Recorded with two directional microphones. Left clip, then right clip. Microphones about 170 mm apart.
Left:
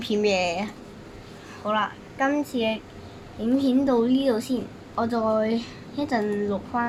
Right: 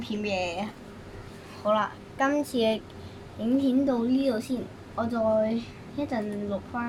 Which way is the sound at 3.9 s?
40° left (ahead or behind).